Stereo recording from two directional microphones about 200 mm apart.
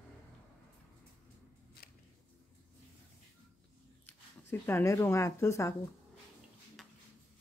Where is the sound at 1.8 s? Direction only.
50° left (ahead or behind).